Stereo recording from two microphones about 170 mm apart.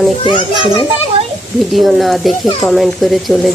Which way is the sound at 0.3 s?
30° left (ahead or behind).